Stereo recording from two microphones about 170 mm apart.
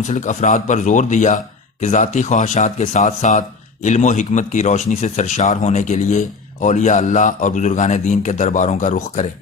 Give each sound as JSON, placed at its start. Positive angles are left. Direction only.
{"t": 0.0, "sound": "speech", "side_deg": 45}